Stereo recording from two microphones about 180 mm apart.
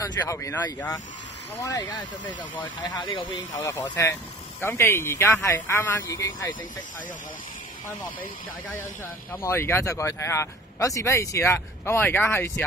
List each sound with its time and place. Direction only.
0.0 s speech: 20° left (ahead or behind)
3.6 s speech: 10° left (ahead or behind)
9.3 s speech: 15° left (ahead or behind)